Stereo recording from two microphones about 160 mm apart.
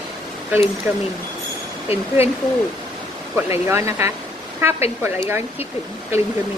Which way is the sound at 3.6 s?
15° right (ahead or behind).